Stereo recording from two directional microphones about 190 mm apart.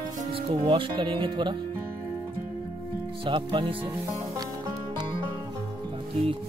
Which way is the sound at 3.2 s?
25° right (ahead or behind).